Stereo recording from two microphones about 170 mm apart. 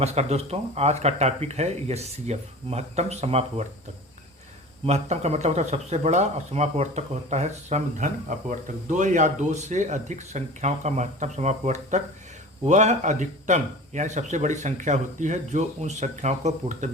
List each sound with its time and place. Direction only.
0.0 s speech: 40° right (ahead or behind)
4.9 s speech: 40° right (ahead or behind)